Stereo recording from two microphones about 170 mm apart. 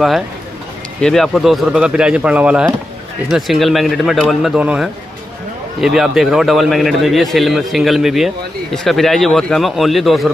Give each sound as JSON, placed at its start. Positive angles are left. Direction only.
{"t": 1.0, "sound": "a man's voice", "side_deg": 0}